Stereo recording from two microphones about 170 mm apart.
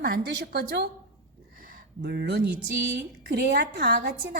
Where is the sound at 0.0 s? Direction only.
65° right (ahead or behind).